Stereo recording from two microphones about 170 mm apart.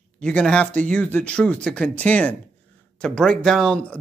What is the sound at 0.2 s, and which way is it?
Speech, 5° left (ahead or behind).